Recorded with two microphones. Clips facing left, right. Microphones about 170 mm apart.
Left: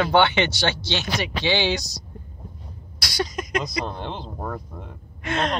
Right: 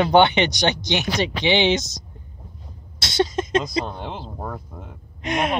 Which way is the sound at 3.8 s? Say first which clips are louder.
Even; 5° right (ahead or behind).